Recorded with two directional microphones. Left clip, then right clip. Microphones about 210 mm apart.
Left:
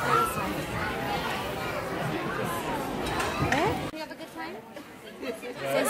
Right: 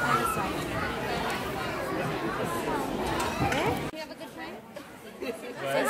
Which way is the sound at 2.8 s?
Centre (ahead or behind).